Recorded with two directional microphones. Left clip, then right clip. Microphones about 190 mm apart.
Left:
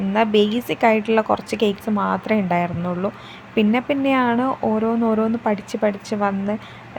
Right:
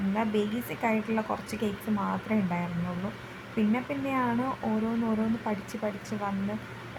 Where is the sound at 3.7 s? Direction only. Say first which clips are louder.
Left 12 dB; 50° left (ahead or behind).